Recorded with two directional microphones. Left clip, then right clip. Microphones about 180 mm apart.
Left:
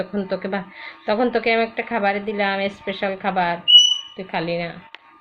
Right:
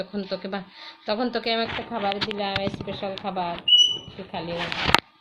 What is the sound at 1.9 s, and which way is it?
Speech, 30° left (ahead or behind).